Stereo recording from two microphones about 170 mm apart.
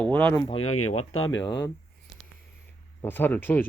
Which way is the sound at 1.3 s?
90° left.